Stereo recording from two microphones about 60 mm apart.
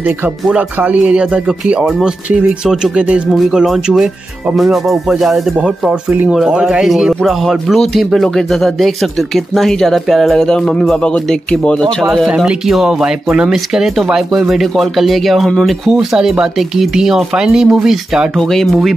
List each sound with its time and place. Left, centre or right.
0.5 s speech: centre
3.6 s speech: centre
6.2 s speech: centre
12.4 s speech: centre
18.5 s speech: centre